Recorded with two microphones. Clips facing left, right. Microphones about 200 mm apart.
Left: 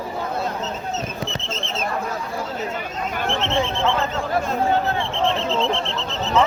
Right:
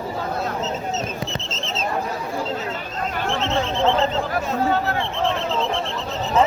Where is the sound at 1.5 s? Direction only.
55° left (ahead or behind).